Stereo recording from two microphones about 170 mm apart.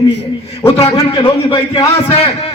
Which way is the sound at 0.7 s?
40° left (ahead or behind).